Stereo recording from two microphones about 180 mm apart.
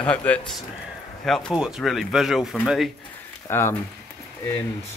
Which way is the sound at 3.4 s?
15° left (ahead or behind).